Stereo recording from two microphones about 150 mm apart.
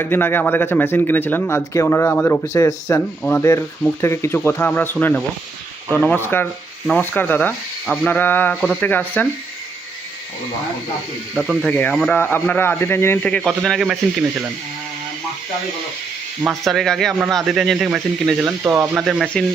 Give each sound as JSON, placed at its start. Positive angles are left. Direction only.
{"t": 0.0, "sound": "speech", "side_deg": 15}
{"t": 11.3, "sound": "speech", "side_deg": 5}
{"t": 16.5, "sound": "speech", "side_deg": 0}